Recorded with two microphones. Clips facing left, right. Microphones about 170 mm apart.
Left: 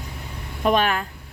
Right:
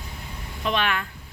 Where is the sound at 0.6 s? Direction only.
40° left (ahead or behind).